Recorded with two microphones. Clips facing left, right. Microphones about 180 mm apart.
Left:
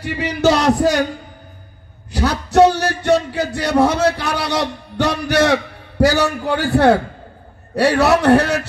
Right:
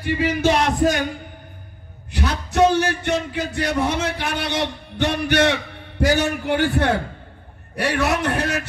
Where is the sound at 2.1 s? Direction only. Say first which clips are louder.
Left 7 dB; 70° left (ahead or behind).